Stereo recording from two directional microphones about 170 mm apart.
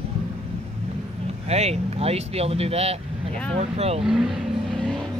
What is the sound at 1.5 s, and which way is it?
Speech, 40° right (ahead or behind).